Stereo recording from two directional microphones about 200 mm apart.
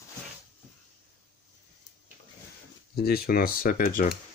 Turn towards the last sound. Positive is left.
turn(degrees=45)  # may be behind; listen again after turning